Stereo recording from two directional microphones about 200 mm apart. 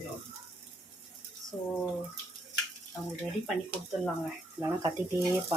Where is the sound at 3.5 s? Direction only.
Centre (ahead or behind).